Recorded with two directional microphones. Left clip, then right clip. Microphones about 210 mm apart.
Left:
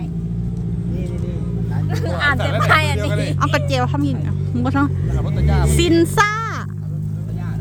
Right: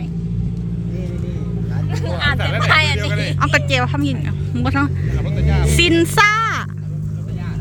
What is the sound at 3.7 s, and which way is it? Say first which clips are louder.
Speech: right 2 dB; 10° left (ahead or behind).